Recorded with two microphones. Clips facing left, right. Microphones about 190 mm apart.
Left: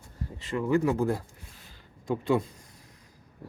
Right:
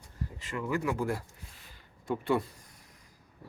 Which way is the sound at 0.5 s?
30° left (ahead or behind).